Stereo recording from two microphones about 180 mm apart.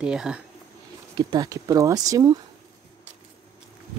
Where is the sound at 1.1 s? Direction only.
20° right (ahead or behind).